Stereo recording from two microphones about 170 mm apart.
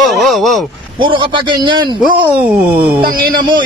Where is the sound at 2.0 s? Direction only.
10° right (ahead or behind).